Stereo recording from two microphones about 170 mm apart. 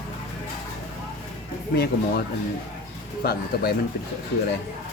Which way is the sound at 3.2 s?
65° left (ahead or behind).